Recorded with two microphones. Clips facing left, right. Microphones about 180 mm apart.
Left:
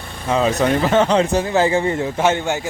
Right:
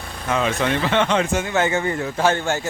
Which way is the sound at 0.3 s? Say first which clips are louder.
Left 4 dB; 35° left (ahead or behind).